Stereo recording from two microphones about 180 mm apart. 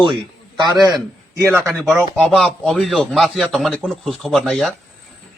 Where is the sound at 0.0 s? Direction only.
25° right (ahead or behind).